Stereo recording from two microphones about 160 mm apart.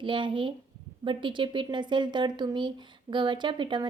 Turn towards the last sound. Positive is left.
turn(degrees=-30)  # may be behind; listen again after turning